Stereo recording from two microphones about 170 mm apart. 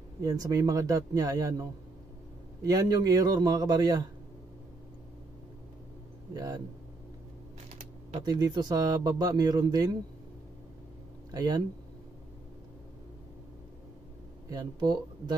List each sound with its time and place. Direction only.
0.2 s speech: 20° right (ahead or behind)
6.3 s speech: 20° right (ahead or behind)
8.2 s speech: 25° right (ahead or behind)
11.3 s speech: 25° right (ahead or behind)
14.5 s speech: 25° right (ahead or behind)